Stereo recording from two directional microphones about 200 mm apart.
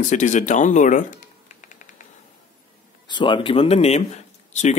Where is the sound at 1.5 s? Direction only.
40° left (ahead or behind).